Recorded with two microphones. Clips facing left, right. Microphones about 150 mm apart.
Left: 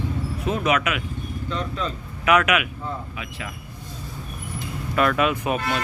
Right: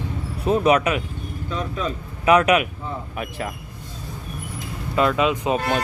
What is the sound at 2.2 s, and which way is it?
Speech, 30° right (ahead or behind).